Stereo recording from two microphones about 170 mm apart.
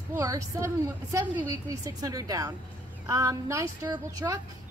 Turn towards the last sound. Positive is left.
turn(degrees=-20)  # may be behind; listen again after turning